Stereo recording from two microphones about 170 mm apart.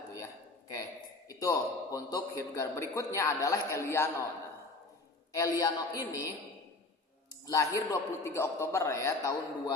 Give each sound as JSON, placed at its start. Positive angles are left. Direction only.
{"t": 1.4, "sound": "a man's voice", "side_deg": 20}
{"t": 5.3, "sound": "a man's voice", "side_deg": 20}
{"t": 7.4, "sound": "a man's voice", "side_deg": 20}